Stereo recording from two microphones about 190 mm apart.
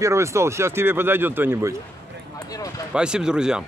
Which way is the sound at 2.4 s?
20° left (ahead or behind).